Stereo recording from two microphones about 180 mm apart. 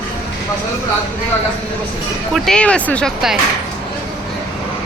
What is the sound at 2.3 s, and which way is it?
Speech, 5° left (ahead or behind).